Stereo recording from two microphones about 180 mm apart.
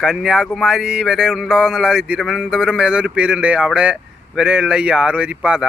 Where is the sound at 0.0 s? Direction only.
Centre (ahead or behind).